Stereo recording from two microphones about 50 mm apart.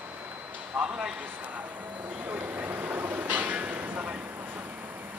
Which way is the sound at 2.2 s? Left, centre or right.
Right.